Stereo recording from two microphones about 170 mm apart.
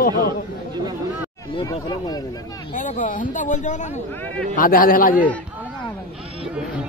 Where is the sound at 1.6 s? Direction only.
25° left (ahead or behind).